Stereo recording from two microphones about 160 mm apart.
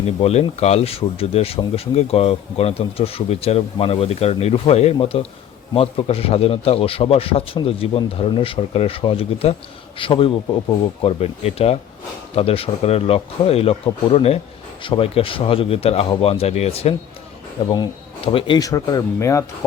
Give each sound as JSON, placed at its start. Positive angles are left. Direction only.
{"t": 0.0, "sound": "speech", "side_deg": 40}
{"t": 17.6, "sound": "speech", "side_deg": 30}